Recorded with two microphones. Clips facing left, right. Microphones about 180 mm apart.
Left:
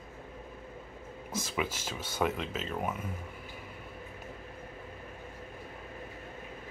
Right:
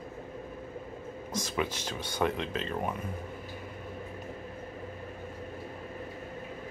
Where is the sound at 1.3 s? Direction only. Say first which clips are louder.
Right 2 dB; 5° left (ahead or behind).